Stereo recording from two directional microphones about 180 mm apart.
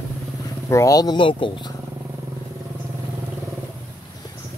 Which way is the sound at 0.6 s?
15° left (ahead or behind).